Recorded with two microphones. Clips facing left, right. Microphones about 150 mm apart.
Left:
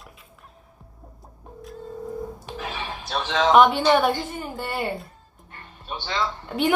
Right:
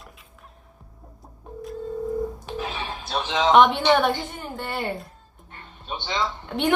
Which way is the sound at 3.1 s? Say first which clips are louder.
Left 1 dB; 15° right (ahead or behind).